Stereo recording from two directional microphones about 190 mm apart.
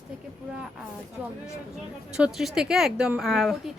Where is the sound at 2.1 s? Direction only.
5° right (ahead or behind).